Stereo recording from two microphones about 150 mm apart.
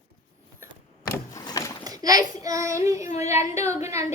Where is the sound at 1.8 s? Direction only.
25° right (ahead or behind).